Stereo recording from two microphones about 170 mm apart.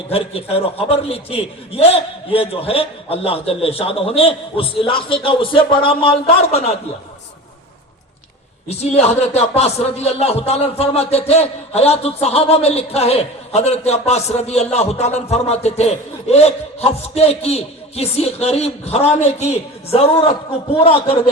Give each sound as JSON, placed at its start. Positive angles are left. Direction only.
{"t": 0.1, "sound": "speech", "side_deg": 35}
{"t": 8.8, "sound": "speech", "side_deg": 40}